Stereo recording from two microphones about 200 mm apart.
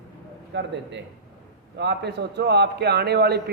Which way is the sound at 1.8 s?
55° right (ahead or behind).